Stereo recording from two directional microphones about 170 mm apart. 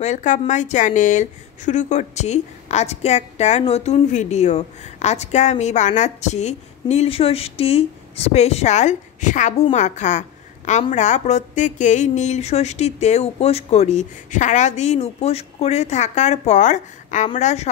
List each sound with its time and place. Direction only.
0.0 s a woman's voice: 45° left (ahead or behind)